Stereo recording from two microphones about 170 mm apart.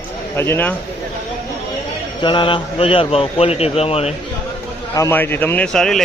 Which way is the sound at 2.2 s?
30° left (ahead or behind).